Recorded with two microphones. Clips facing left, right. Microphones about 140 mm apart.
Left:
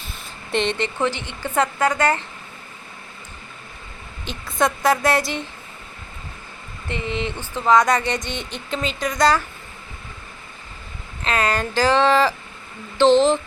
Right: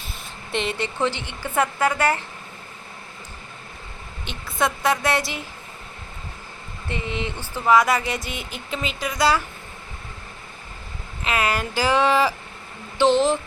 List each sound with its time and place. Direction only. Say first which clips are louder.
0.5 s speech: left 4 dB; 5° right (ahead or behind)
4.3 s speech: left 3 dB; centre (ahead or behind)
6.8 s speech: left 2 dB; 20° left (ahead or behind)
7.1 s speech: left 4 dB; 15° right (ahead or behind)
7.3 s speech: left 2 dB; 15° left (ahead or behind)
7.7 s speech: left 1 dB; 5° right (ahead or behind)
11.2 s speech: left 2 dB; 10° right (ahead or behind)